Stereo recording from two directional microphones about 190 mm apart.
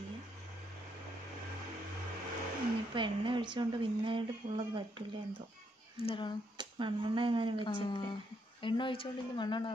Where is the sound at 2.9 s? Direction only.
25° right (ahead or behind).